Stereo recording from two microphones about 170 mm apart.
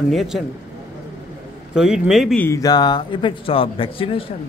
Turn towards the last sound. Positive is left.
turn(degrees=30)  # may be behind; listen again after turning